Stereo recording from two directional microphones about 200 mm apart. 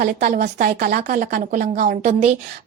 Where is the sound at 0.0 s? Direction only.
45° right (ahead or behind).